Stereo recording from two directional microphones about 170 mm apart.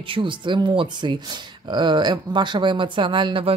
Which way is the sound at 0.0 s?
30° right (ahead or behind).